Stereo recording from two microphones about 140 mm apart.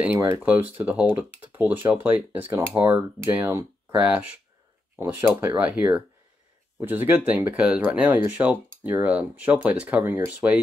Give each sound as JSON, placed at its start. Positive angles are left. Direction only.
{"t": 0.0, "sound": "speech", "side_deg": -15}